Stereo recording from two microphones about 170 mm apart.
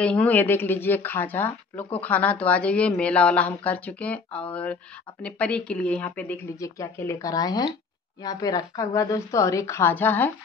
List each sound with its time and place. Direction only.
0.0 s speech: 5° left (ahead or behind)